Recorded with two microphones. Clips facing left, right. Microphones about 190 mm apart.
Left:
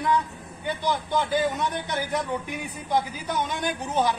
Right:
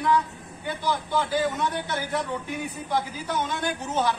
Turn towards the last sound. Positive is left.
turn(degrees=15)  # may be behind; listen again after turning